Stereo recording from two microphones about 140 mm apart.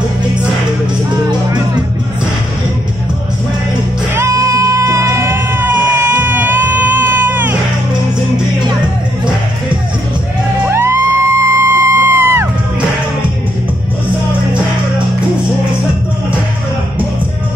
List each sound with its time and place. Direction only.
4.1 s music: 20° right (ahead or behind)
6.1 s a sound: 15° right (ahead or behind)
10.7 s music: 20° right (ahead or behind)